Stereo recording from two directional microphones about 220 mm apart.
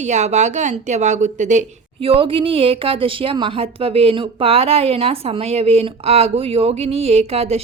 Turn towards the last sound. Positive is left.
turn(degrees=-30)  # may be behind; listen again after turning